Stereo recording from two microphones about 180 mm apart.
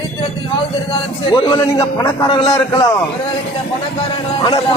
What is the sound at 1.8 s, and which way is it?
A man's voice, 15° left (ahead or behind).